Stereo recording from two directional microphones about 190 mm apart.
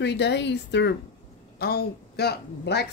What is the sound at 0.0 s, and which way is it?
Speech, 60° left (ahead or behind).